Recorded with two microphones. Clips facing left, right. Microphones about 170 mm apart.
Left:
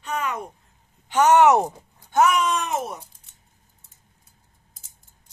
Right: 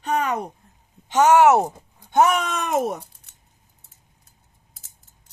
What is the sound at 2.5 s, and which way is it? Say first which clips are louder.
Speech: right 4 dB; 55° right (ahead or behind).